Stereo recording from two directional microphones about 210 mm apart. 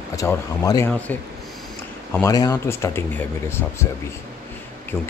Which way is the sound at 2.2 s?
15° left (ahead or behind).